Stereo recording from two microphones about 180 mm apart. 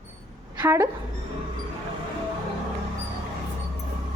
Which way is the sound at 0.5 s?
10° right (ahead or behind).